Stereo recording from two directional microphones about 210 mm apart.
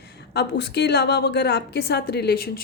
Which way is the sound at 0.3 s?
50° left (ahead or behind).